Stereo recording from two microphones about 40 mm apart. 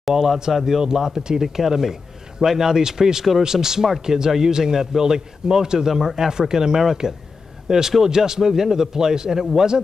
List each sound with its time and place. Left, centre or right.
0.1 s speech: centre